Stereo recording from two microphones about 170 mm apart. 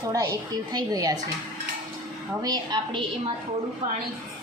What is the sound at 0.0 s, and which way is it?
A woman's voice, 20° right (ahead or behind).